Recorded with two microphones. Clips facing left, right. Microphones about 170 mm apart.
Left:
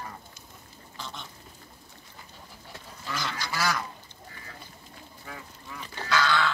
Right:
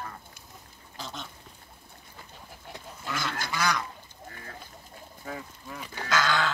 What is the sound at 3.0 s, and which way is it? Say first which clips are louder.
Goose: right 1 dB; centre (ahead or behind).